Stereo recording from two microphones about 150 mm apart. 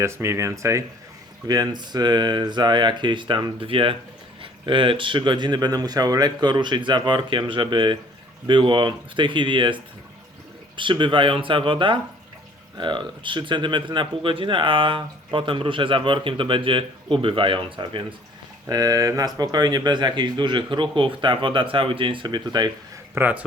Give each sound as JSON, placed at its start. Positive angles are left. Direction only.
{"t": 0.0, "sound": "speech", "side_deg": -20}
{"t": 23.1, "sound": "speech", "side_deg": -10}